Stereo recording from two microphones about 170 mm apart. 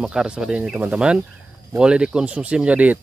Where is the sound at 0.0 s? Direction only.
5° right (ahead or behind).